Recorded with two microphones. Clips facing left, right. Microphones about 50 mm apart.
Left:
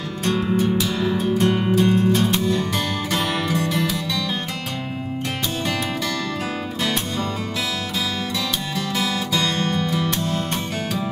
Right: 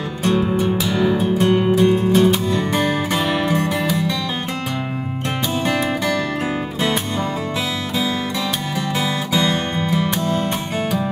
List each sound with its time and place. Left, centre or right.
0.2 s music: right
8.7 s music: right